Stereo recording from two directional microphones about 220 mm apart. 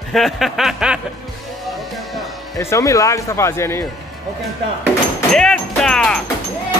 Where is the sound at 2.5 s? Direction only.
15° left (ahead or behind).